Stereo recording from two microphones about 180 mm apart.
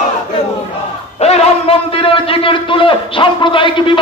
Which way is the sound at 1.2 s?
35° left (ahead or behind).